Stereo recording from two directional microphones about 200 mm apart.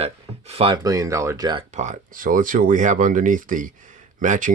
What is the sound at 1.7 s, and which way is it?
Speech, 35° right (ahead or behind).